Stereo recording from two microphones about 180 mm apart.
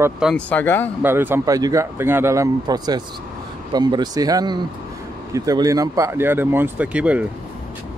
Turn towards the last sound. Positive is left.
turn(degrees=-5)  # may be behind; listen again after turning